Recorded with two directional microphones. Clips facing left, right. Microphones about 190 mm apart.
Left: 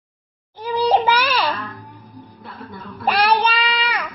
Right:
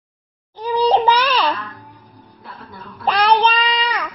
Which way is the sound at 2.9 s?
10° left (ahead or behind).